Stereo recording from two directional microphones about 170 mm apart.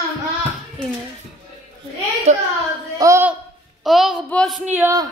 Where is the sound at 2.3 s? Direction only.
40° right (ahead or behind).